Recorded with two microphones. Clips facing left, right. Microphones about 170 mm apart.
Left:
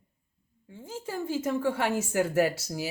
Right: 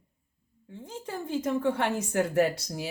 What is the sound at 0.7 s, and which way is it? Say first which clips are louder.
A woman's voice: left 1 dB; 5° left (ahead or behind).